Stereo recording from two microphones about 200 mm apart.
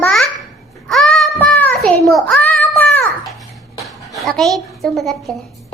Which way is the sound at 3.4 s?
Centre (ahead or behind).